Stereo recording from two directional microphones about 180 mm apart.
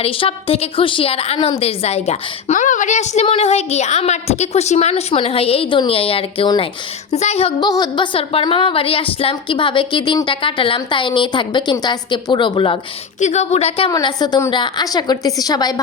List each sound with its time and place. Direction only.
0.0 s a woman's voice: 30° left (ahead or behind)
7.6 s a woman's voice: 25° left (ahead or behind)
13.1 s a woman's voice: 40° left (ahead or behind)
13.9 s a woman's voice: 25° left (ahead or behind)